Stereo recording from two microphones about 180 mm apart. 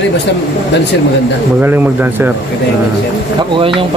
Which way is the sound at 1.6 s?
10° right (ahead or behind).